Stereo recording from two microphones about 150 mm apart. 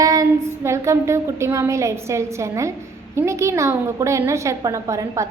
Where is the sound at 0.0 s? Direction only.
20° right (ahead or behind).